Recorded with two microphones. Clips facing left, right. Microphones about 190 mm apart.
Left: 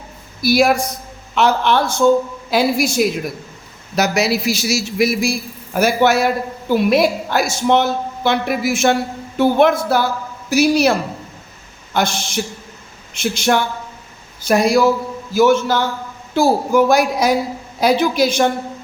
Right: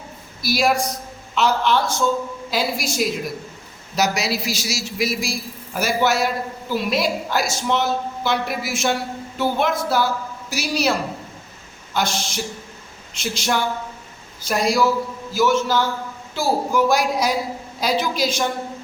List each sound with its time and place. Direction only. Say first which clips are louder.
0.4 s a man's voice: left 5 dB; 55° left (ahead or behind)
11.9 s a man's voice: left 4 dB; 55° left (ahead or behind)